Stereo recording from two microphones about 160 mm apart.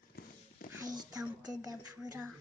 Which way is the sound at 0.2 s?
70° left (ahead or behind).